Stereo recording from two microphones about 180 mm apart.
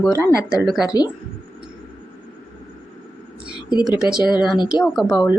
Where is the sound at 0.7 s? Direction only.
Centre (ahead or behind).